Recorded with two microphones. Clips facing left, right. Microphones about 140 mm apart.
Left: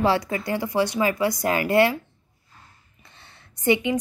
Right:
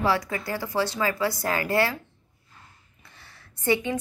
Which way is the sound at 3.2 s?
20° left (ahead or behind).